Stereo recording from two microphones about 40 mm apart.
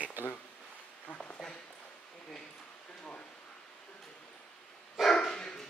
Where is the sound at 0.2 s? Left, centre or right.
Right.